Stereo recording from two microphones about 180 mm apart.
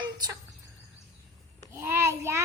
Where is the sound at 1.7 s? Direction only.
15° right (ahead or behind).